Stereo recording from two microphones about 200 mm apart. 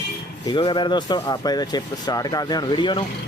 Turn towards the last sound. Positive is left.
turn(degrees=20)  # may be behind; listen again after turning